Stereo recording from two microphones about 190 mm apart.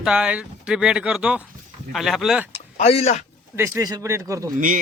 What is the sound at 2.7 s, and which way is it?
Speech, 35° left (ahead or behind).